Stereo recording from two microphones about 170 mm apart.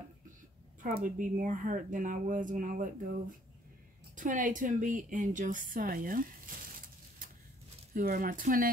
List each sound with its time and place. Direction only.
0.8 s a woman's voice: 50° right (ahead or behind)